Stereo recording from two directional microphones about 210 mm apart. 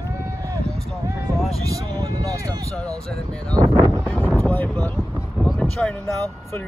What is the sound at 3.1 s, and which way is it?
Speech, 5° left (ahead or behind).